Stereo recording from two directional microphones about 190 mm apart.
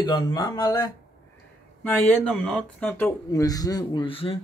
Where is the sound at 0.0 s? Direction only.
20° left (ahead or behind).